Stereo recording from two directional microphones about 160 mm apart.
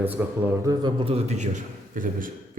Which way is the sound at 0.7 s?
30° right (ahead or behind).